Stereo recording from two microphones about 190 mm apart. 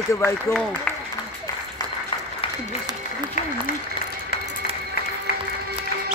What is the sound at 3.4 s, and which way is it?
Applause, 45° left (ahead or behind).